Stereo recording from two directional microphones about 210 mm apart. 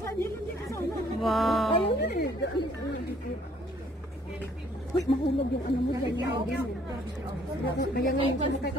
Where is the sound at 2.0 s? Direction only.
50° left (ahead or behind).